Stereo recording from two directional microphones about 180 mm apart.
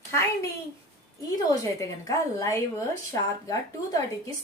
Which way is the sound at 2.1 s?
15° left (ahead or behind).